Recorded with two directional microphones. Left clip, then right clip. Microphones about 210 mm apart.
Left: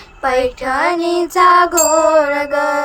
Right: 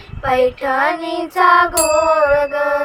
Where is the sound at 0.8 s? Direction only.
55° left (ahead or behind).